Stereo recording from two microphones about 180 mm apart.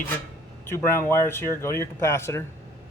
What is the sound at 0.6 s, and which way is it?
Speech, 15° left (ahead or behind).